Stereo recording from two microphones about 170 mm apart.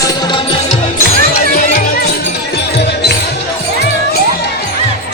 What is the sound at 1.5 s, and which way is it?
Music, 60° left (ahead or behind).